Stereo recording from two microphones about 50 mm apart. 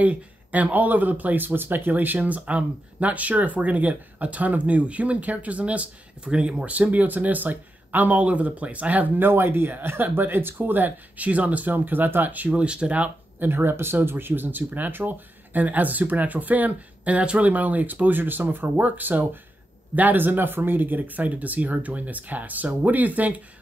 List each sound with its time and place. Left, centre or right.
0.0 s speech: right
13.4 s speech: right